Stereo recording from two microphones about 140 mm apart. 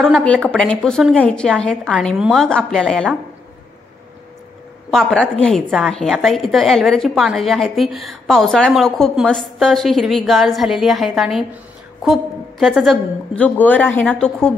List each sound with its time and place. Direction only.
0.0 s a woman's voice: 5° left (ahead or behind)
4.9 s a woman's voice: 5° left (ahead or behind)
13.4 s a woman's voice: 10° left (ahead or behind)